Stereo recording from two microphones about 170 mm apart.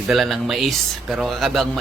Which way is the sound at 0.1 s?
Centre (ahead or behind).